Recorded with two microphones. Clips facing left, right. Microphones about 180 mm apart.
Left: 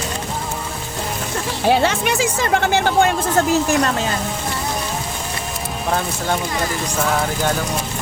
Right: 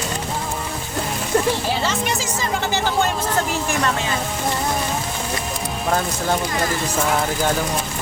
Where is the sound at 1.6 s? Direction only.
60° left (ahead or behind).